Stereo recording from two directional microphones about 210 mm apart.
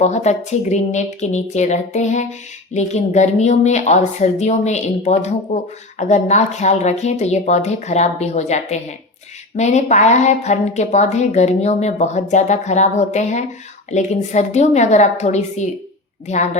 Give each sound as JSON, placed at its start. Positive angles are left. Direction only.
{"t": 0.0, "sound": "a woman's voice", "side_deg": 35}